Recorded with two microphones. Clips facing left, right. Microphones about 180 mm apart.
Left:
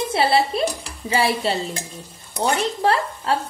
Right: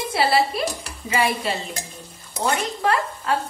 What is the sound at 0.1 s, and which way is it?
Speech, 25° left (ahead or behind).